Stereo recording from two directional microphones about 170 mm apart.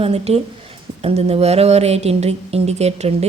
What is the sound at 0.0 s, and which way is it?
Speech, 35° right (ahead or behind).